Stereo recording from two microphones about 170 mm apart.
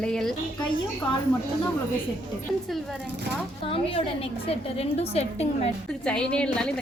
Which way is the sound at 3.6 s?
35° left (ahead or behind).